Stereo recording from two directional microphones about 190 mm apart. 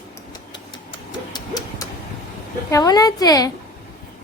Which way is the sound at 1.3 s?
20° left (ahead or behind).